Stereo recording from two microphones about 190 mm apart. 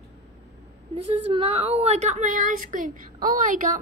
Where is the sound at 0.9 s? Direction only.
30° right (ahead or behind).